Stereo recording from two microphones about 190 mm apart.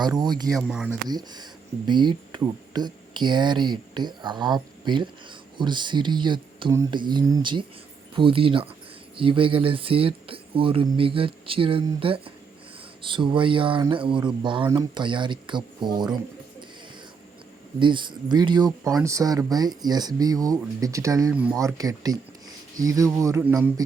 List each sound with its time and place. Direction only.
0.2 s speech: 20° right (ahead or behind)
0.5 s speech: 5° right (ahead or behind)
1.0 s speech: 20° right (ahead or behind)
17.7 s speech: 25° right (ahead or behind)